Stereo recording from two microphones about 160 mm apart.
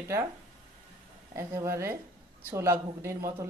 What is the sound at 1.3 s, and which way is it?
A woman's voice, 20° right (ahead or behind).